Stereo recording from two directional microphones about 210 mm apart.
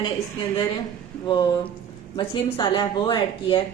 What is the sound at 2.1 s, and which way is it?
Speech, 20° left (ahead or behind).